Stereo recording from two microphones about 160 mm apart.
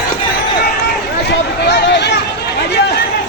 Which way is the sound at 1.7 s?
90° left.